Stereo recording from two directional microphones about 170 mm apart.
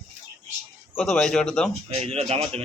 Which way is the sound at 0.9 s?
5° left (ahead or behind).